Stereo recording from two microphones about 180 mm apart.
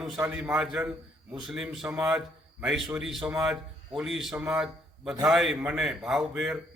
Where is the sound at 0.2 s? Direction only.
10° right (ahead or behind).